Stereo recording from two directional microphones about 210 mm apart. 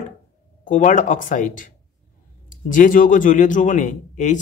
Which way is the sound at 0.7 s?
35° left (ahead or behind).